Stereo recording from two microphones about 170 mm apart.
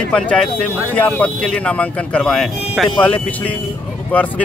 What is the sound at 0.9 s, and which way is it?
Speech, 10° left (ahead or behind).